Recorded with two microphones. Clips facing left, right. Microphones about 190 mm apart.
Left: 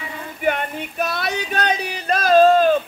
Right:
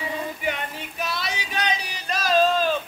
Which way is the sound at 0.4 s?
55° left (ahead or behind).